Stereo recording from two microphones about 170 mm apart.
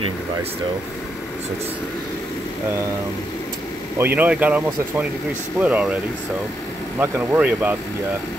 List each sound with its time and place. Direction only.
4.0 s speech: 10° right (ahead or behind)
7.0 s speech: 10° right (ahead or behind)